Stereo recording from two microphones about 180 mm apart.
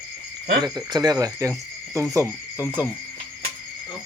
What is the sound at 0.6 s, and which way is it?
Speech, 25° right (ahead or behind).